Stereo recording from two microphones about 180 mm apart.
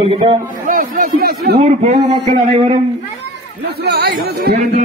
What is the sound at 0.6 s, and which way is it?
Speech, 50° right (ahead or behind).